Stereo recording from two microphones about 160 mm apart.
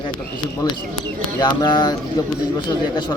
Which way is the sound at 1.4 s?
30° left (ahead or behind).